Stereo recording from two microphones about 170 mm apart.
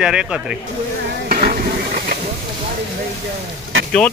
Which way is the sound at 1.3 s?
60° right (ahead or behind).